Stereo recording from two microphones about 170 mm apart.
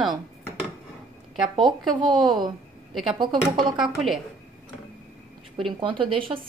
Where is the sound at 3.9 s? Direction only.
Centre (ahead or behind).